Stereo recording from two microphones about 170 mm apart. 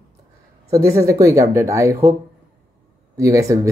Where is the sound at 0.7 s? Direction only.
20° right (ahead or behind).